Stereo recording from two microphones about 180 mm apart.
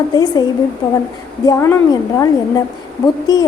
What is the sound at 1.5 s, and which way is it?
A woman's voice, 15° left (ahead or behind).